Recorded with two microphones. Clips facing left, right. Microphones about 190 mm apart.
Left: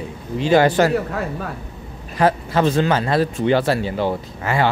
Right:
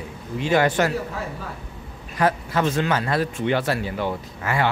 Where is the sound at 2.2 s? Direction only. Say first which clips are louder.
Left 4 dB; 30° left (ahead or behind).